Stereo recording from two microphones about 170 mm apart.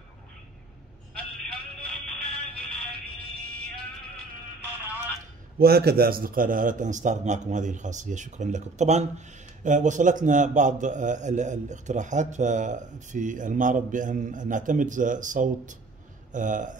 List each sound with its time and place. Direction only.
1.5 s music: centre (ahead or behind)
5.6 s a man's voice: 65° right (ahead or behind); by 16.7 s 50° right (ahead or behind)